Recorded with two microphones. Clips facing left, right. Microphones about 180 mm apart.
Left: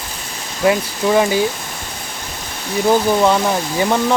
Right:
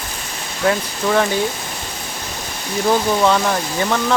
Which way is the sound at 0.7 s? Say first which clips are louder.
Left 3 dB; 15° left (ahead or behind).